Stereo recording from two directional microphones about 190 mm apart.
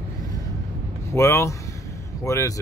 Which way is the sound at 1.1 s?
15° left (ahead or behind).